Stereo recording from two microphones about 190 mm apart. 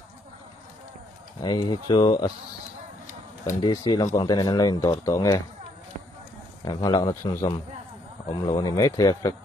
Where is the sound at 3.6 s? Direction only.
25° left (ahead or behind).